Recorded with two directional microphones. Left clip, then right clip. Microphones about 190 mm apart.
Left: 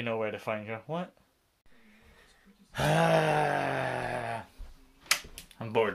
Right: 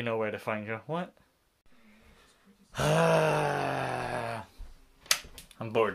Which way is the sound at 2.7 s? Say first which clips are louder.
Even; 10° right (ahead or behind).